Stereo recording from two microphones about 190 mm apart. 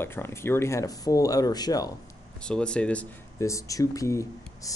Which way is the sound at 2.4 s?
5° left (ahead or behind).